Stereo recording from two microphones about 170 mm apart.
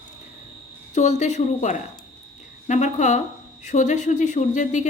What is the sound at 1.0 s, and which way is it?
A woman's voice, 45° left (ahead or behind).